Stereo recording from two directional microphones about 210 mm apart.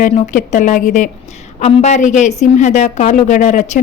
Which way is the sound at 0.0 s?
35° left (ahead or behind).